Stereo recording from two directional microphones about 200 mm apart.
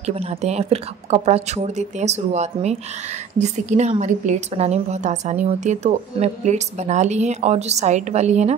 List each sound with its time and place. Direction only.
0.0 s a woman's voice: 30° right (ahead or behind)